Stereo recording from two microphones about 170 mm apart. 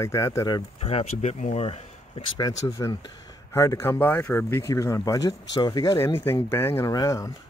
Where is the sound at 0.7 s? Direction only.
35° left (ahead or behind).